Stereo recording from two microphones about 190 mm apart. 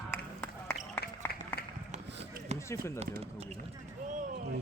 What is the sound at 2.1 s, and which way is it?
Chop, 65° right (ahead or behind).